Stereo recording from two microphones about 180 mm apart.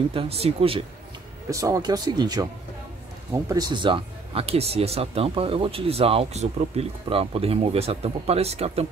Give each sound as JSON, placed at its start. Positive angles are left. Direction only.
{"t": 0.1, "sound": "speech", "side_deg": -30}
{"t": 1.5, "sound": "speech", "side_deg": -20}